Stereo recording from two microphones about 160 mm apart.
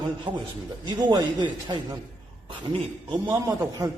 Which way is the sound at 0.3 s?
30° right (ahead or behind).